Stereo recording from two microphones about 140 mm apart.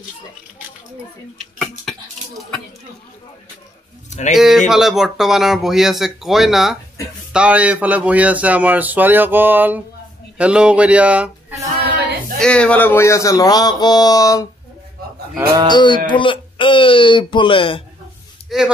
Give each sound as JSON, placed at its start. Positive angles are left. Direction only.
{"t": 1.6, "sound": "a sound", "side_deg": 0}
{"t": 4.1, "sound": "speech", "side_deg": 55}
{"t": 4.4, "sound": "speech", "side_deg": 0}
{"t": 12.4, "sound": "speech", "side_deg": 5}
{"t": 15.7, "sound": "speech", "side_deg": 30}
{"t": 18.5, "sound": "speech", "side_deg": 0}